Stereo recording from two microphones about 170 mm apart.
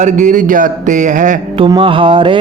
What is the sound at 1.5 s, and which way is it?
Music, 30° right (ahead or behind).